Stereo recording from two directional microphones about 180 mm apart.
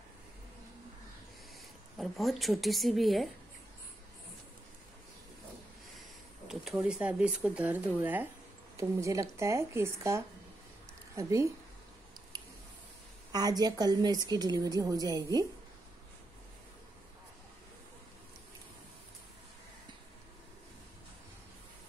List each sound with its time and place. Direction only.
2.0 s a woman's voice: centre (ahead or behind)
6.4 s speech: centre (ahead or behind)
13.3 s a woman's voice: 20° right (ahead or behind)